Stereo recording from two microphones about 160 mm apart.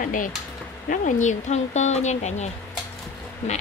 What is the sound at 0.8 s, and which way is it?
A woman's voice, 50° left (ahead or behind).